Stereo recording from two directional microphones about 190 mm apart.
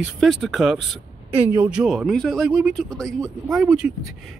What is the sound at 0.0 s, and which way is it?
Speech, centre (ahead or behind).